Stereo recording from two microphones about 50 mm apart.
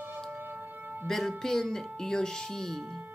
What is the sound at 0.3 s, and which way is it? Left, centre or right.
Shofar, right.